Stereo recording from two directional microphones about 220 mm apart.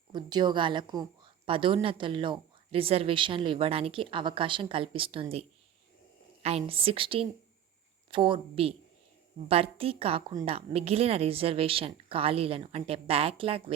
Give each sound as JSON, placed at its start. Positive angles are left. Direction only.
{"t": 0.1, "sound": "a woman's voice", "side_deg": -20}